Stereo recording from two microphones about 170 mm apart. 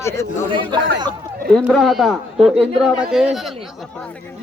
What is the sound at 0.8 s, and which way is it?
Speech, 90° right.